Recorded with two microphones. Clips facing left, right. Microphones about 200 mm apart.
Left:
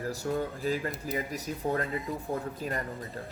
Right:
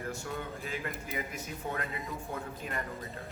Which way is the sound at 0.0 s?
35° left (ahead or behind).